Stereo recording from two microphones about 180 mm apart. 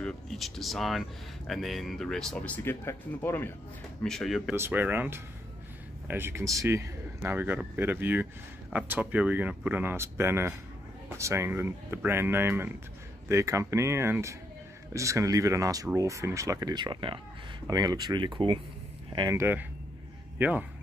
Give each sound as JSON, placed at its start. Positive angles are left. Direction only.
{"t": 0.0, "sound": "speech", "side_deg": 0}
{"t": 4.6, "sound": "speech", "side_deg": -10}